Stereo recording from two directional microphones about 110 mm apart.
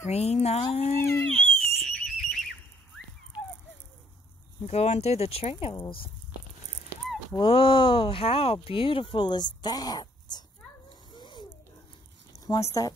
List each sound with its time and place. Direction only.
0.0 s speech: 70° left (ahead or behind)
1.3 s a sound: 5° left (ahead or behind)
4.6 s speech: 85° left; by 5.8 s 65° left (ahead or behind)
7.3 s speech: 55° left (ahead or behind)
11.1 s a sound: 45° left (ahead or behind)
12.4 s speech: 30° left (ahead or behind)